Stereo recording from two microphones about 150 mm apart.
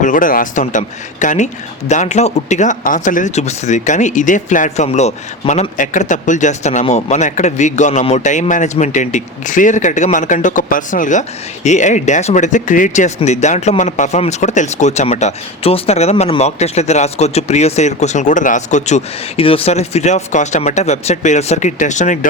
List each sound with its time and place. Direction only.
0.0 s a man's voice: 60° left (ahead or behind)